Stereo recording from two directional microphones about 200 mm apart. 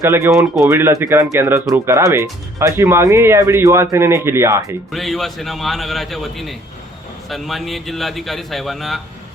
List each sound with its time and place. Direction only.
0.0 s speech: 15° right (ahead or behind)
4.9 s a man's voice: centre (ahead or behind)